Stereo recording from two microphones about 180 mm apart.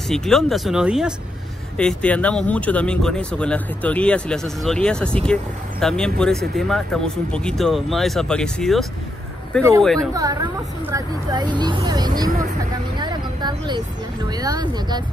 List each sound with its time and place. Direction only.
0.1 s speech: centre (ahead or behind)
10.1 s speech: 20° right (ahead or behind)
12.9 s vehicle: 25° right (ahead or behind)
14.3 s speech: 20° right (ahead or behind)